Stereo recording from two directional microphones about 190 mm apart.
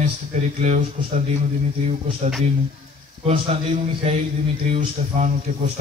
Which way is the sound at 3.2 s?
30° right (ahead or behind).